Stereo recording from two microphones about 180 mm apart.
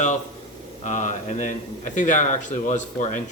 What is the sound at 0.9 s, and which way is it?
A man's voice, 45° left (ahead or behind).